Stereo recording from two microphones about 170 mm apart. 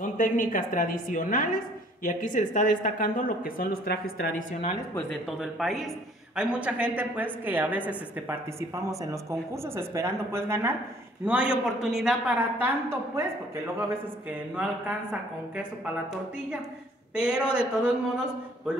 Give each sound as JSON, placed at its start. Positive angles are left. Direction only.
{"t": 0.0, "sound": "a woman's voice", "side_deg": 50}
{"t": 4.9, "sound": "a woman's voice", "side_deg": 0}
{"t": 14.5, "sound": "a woman's voice", "side_deg": -5}
{"t": 17.1, "sound": "speech", "side_deg": -5}